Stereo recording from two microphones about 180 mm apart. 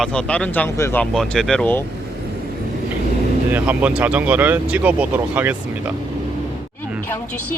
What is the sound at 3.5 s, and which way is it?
Speech, 10° right (ahead or behind).